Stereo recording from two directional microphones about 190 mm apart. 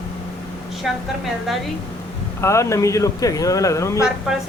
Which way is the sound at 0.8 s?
Centre (ahead or behind).